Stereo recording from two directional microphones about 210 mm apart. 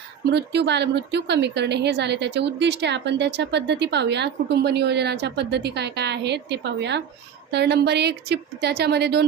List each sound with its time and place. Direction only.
0.3 s a woman's voice: 55° right (ahead or behind)